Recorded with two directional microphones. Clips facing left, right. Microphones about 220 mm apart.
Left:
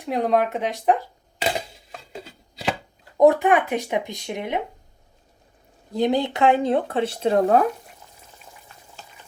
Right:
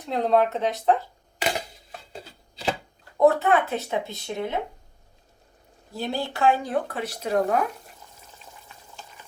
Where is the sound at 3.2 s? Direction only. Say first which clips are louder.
Left 3 dB; 15° left (ahead or behind).